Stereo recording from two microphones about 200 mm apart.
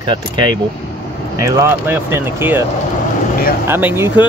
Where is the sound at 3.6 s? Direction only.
10° right (ahead or behind).